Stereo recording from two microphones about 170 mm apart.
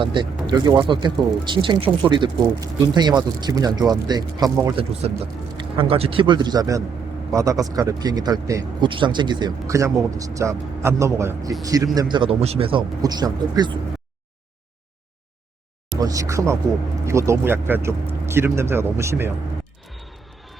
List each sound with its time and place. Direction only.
0.0 s speech: 30° right (ahead or behind)
5.0 s speech: 35° right (ahead or behind)
16.0 s speech: 20° right (ahead or behind)